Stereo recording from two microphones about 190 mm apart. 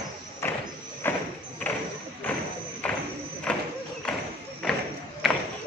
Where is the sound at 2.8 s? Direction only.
5° left (ahead or behind).